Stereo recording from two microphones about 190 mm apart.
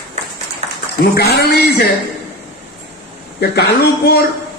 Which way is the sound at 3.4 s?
55° left (ahead or behind).